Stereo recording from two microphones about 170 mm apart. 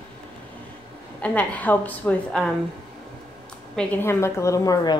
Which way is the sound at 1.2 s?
10° left (ahead or behind).